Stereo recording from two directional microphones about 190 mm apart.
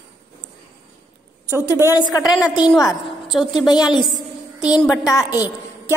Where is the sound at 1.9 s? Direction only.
20° left (ahead or behind).